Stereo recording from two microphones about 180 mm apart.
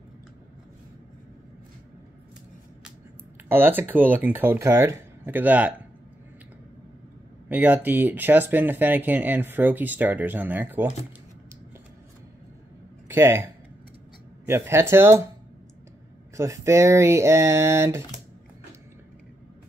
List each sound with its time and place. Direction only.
3.4 s speech: 10° right (ahead or behind)
7.4 s speech: 10° right (ahead or behind)
13.1 s speech: 15° right (ahead or behind)
16.3 s speech: 15° right (ahead or behind)